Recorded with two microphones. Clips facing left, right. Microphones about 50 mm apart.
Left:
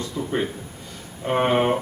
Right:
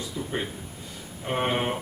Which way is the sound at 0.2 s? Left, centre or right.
Centre.